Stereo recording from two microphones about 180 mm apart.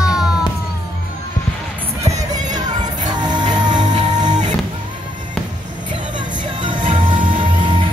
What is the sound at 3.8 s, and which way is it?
Music, 40° right (ahead or behind).